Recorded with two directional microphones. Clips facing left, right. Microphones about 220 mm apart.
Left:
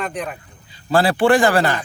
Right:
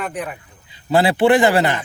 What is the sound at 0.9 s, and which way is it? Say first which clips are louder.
Speech: right 1 dB; 20° right (ahead or behind).